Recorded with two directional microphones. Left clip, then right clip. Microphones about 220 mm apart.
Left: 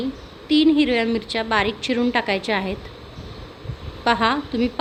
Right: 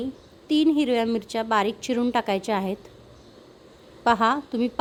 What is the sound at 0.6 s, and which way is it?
A woman's voice, 25° right (ahead or behind).